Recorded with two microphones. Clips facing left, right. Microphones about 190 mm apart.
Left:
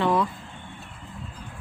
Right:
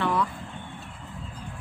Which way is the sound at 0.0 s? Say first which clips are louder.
Left 3 dB; 20° left (ahead or behind).